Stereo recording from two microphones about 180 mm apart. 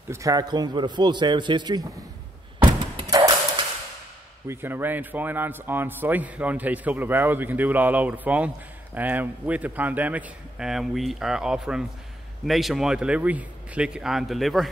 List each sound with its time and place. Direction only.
0.1 s a man's voice: 20° right (ahead or behind)
2.6 s a sound: 20° right (ahead or behind)
4.5 s a man's voice: 10° right (ahead or behind)